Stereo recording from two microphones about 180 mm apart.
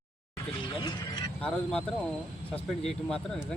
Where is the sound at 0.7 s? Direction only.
25° left (ahead or behind).